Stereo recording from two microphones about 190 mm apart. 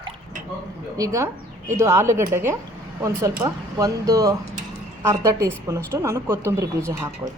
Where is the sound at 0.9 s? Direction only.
15° right (ahead or behind).